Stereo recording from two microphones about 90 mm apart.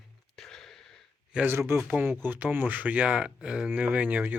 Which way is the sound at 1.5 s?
25° right (ahead or behind).